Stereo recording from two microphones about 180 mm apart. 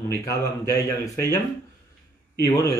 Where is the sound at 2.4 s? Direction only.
15° left (ahead or behind).